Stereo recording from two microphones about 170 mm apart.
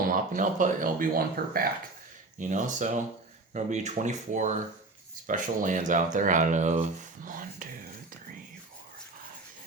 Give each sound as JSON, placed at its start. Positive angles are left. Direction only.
{"t": 0.0, "sound": "speech", "side_deg": -50}
{"t": 2.4, "sound": "speech", "side_deg": -45}